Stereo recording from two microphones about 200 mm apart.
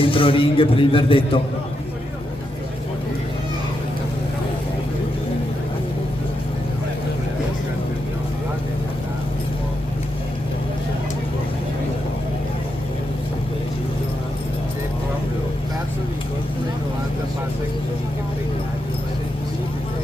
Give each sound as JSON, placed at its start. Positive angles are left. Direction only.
{"t": 0.0, "sound": "a man's voice", "side_deg": 25}